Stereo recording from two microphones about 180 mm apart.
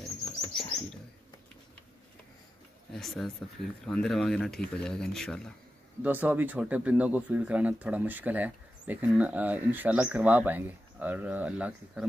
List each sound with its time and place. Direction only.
0.2 s bird flight: 25° left (ahead or behind)
2.9 s speech: centre (ahead or behind)
6.0 s speech: 10° right (ahead or behind)